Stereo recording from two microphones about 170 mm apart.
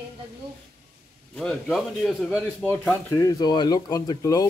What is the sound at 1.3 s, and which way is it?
A man's voice, centre (ahead or behind).